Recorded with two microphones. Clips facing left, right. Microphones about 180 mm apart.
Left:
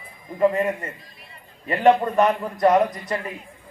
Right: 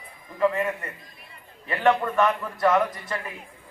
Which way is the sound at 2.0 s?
35° left (ahead or behind).